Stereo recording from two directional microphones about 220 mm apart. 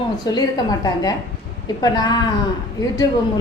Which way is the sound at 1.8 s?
20° left (ahead or behind).